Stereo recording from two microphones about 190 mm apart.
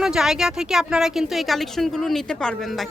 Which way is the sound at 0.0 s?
Centre (ahead or behind).